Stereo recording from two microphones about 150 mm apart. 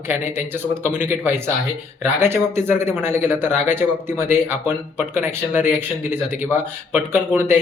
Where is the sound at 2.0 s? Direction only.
15° right (ahead or behind).